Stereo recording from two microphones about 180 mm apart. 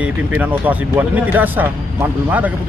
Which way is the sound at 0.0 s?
10° right (ahead or behind).